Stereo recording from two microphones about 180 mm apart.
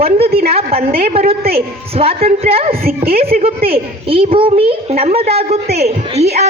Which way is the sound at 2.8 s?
60° right (ahead or behind).